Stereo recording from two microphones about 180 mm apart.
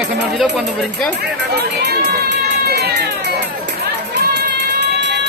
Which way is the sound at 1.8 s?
65° right (ahead or behind).